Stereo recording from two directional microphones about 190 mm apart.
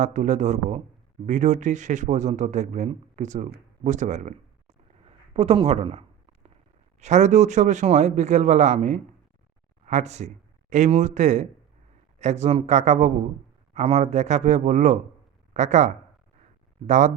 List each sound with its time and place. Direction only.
0.0 s speech: 40° right (ahead or behind)
5.0 s a sound: 30° right (ahead or behind)
7.0 s speech: 40° right (ahead or behind)